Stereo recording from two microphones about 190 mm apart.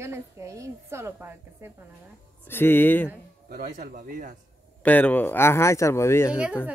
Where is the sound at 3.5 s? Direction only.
45° right (ahead or behind).